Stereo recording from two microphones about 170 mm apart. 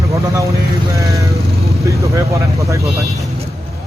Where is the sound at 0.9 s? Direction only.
20° right (ahead or behind).